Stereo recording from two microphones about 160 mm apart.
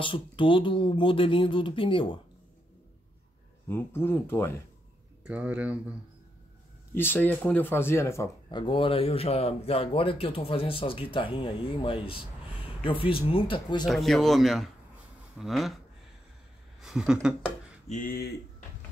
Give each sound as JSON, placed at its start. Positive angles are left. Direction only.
{"t": 0.0, "sound": "speech", "side_deg": 30}
{"t": 3.6, "sound": "speech", "side_deg": 15}
{"t": 5.2, "sound": "speech", "side_deg": -10}
{"t": 6.9, "sound": "speech", "side_deg": 15}
{"t": 8.5, "sound": "speech", "side_deg": 30}
{"t": 13.8, "sound": "speech", "side_deg": 0}
{"t": 16.8, "sound": "speech", "side_deg": -5}
{"t": 17.8, "sound": "speech", "side_deg": 55}